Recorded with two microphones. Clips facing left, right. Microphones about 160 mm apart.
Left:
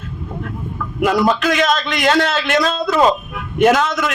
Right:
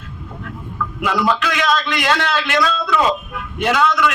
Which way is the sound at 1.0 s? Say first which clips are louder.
Left 4 dB; 45° left (ahead or behind).